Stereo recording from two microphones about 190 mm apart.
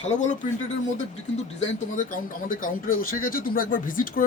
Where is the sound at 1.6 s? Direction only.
45° left (ahead or behind).